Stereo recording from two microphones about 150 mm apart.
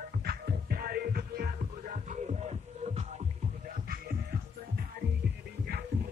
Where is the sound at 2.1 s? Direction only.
45° right (ahead or behind).